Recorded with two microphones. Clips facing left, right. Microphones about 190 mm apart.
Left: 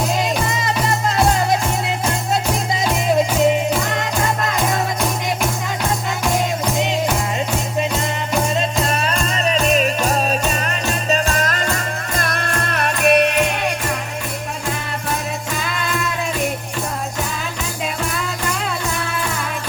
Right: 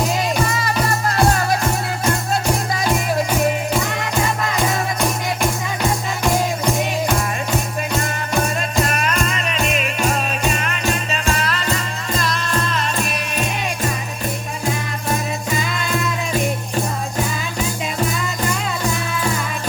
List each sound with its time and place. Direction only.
0.4 s music: 20° left (ahead or behind)
3.1 s music: 20° left (ahead or behind)
8.8 s music: 30° left (ahead or behind); by 11.7 s 45° left (ahead or behind)
12.1 s music: 55° left (ahead or behind)